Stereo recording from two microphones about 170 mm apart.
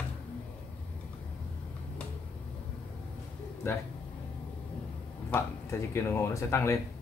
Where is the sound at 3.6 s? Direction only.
15° left (ahead or behind).